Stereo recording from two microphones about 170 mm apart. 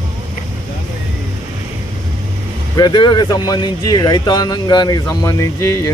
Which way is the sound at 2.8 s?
25° left (ahead or behind).